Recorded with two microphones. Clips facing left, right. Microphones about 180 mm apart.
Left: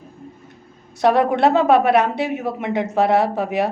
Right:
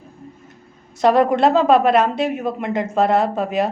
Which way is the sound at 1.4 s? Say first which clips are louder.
Even; 65° left (ahead or behind).